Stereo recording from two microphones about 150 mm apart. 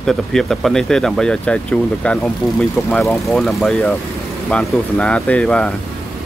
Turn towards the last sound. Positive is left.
turn(degrees=5)  # may be behind; listen again after turning